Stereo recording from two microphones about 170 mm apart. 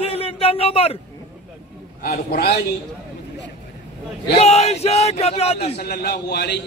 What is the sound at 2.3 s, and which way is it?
Speech, 65° left (ahead or behind).